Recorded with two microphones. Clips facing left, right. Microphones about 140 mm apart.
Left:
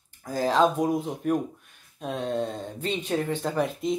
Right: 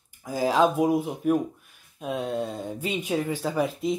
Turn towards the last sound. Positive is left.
turn(degrees=-5)  # may be behind; listen again after turning